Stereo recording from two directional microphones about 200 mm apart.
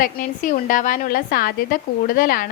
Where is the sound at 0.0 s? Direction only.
40° left (ahead or behind).